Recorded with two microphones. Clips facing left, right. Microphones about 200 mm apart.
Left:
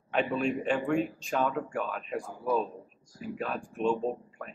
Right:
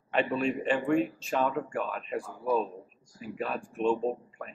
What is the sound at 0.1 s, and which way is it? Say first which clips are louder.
Speech: even; centre (ahead or behind).